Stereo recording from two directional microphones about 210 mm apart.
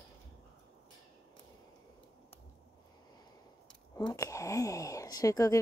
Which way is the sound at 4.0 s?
15° left (ahead or behind).